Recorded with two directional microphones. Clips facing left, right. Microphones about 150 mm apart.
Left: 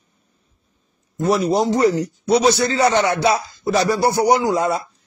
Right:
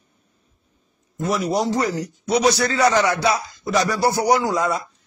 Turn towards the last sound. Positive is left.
turn(degrees=30)  # may be behind; listen again after turning